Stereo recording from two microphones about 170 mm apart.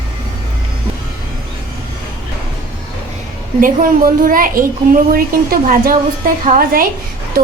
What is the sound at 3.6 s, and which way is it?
A child's voice, 55° right (ahead or behind).